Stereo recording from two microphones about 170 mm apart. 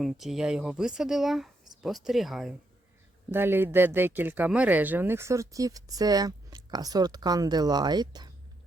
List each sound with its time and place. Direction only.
0.0 s speech: centre (ahead or behind)
3.3 s speech: 10° right (ahead or behind)